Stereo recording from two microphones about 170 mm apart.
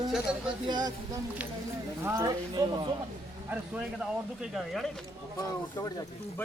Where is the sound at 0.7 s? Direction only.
25° right (ahead or behind).